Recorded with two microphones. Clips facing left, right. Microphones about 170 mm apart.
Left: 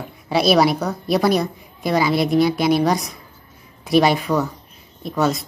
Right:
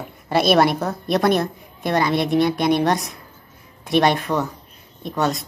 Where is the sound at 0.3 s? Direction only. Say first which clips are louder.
Left 1 dB; centre (ahead or behind).